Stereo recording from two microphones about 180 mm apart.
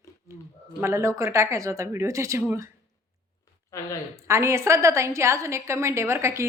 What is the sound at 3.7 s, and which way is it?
Speech, 20° left (ahead or behind).